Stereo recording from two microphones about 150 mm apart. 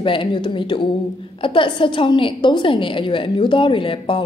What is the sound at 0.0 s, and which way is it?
A woman's voice, 35° left (ahead or behind).